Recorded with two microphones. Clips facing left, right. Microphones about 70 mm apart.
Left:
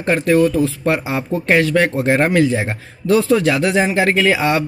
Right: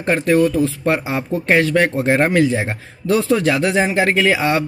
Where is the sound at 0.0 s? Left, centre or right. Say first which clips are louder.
Left 1 dB; right.